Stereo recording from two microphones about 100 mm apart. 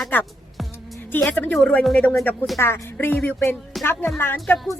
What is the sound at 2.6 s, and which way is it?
Speech, 25° left (ahead or behind).